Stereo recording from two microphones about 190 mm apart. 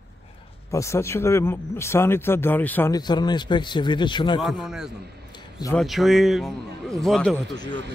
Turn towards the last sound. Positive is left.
turn(degrees=5)  # may be behind; listen again after turning